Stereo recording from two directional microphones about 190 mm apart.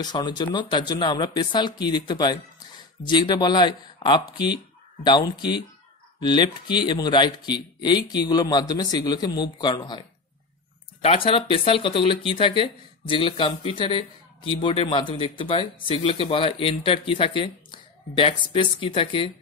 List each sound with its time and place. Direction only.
0.0 s speech: 20° left (ahead or behind)
11.2 s speech: 30° left (ahead or behind)